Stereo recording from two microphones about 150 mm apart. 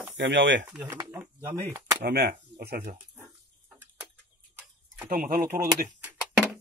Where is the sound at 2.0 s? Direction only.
90° right.